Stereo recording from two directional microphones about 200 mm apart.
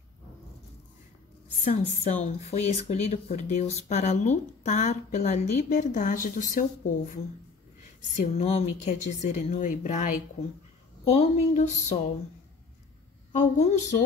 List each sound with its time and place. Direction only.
1.6 s speech: 35° left (ahead or behind)
8.2 s speech: 35° left (ahead or behind)
13.3 s speech: 35° left (ahead or behind)